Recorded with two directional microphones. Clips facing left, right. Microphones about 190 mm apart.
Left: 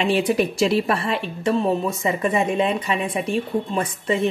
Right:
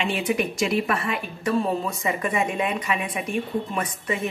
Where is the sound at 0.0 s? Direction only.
35° left (ahead or behind).